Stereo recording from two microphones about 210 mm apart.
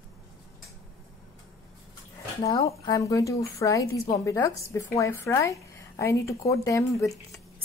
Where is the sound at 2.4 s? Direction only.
15° left (ahead or behind).